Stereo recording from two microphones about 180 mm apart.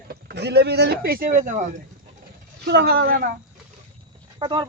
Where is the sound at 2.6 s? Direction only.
65° right (ahead or behind).